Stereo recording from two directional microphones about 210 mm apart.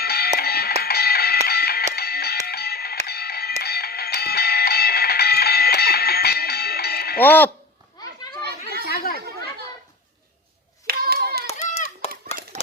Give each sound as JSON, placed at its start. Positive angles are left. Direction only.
{"t": 0.0, "sound": "music", "side_deg": 50}
{"t": 7.2, "sound": "speech", "side_deg": 10}
{"t": 8.0, "sound": "children playing", "side_deg": 20}
{"t": 8.9, "sound": "chatter", "side_deg": 45}
{"t": 10.8, "sound": "hands", "side_deg": -50}
{"t": 11.4, "sound": "a sound", "side_deg": 30}